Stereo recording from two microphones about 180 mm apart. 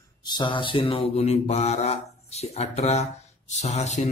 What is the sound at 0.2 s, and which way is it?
Mantra, 25° left (ahead or behind).